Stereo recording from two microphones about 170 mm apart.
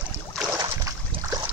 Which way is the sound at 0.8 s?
20° right (ahead or behind).